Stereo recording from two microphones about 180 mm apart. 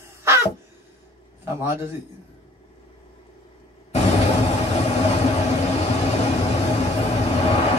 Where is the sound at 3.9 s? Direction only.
35° left (ahead or behind).